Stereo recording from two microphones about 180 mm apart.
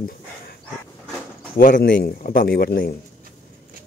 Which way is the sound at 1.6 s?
50° left (ahead or behind).